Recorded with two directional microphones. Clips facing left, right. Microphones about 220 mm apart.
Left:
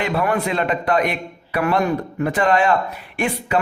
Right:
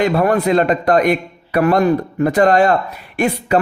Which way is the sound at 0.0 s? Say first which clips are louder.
Right 6 dB; 40° right (ahead or behind).